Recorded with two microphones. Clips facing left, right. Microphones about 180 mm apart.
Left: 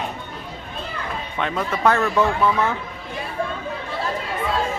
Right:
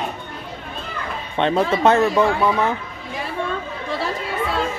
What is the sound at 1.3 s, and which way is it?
Speech, 30° right (ahead or behind).